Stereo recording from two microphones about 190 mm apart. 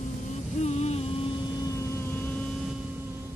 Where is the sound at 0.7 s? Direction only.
35° left (ahead or behind).